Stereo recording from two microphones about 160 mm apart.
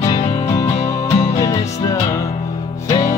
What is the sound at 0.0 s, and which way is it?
Music, 20° left (ahead or behind).